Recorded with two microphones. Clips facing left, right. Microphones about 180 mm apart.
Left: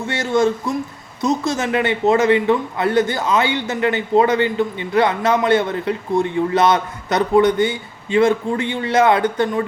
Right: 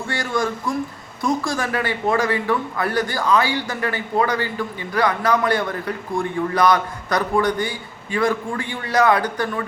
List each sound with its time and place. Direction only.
0.1 s a man's voice: 25° left (ahead or behind)